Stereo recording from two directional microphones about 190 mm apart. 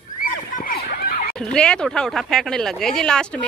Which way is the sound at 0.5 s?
50° left (ahead or behind).